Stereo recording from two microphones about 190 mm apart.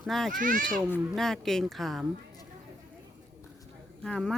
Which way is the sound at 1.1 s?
Centre (ahead or behind).